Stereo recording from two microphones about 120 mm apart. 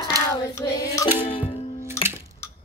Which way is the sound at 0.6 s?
25° left (ahead or behind).